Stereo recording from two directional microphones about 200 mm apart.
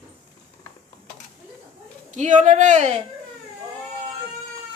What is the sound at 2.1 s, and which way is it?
Speech, 35° right (ahead or behind).